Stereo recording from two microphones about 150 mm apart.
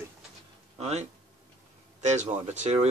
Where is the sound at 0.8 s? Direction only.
45° right (ahead or behind).